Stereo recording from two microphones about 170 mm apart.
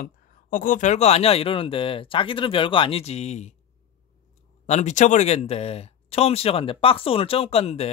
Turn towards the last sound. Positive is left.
turn(degrees=35)  # may be behind; listen again after turning